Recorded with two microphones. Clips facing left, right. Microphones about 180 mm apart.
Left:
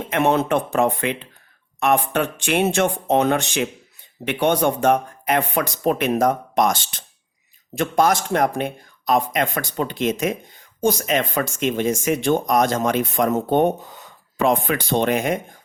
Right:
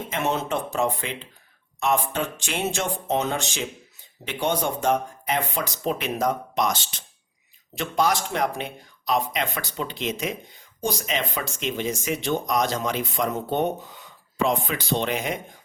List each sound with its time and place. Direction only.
0.0 s speech: 60° left (ahead or behind)